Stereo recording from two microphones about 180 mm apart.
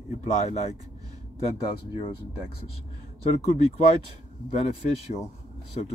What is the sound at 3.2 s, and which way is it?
Speech, 40° left (ahead or behind).